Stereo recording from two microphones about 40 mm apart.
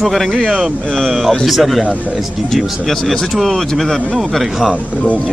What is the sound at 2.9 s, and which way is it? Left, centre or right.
Speech, centre.